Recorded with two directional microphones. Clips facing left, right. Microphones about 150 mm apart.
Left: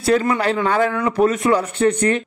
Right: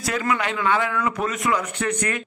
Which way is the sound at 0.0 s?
30° left (ahead or behind).